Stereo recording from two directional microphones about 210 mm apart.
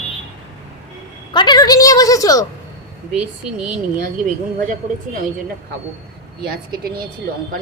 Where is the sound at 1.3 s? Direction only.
20° left (ahead or behind).